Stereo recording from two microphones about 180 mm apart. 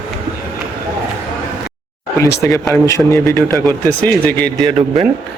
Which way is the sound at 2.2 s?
15° left (ahead or behind).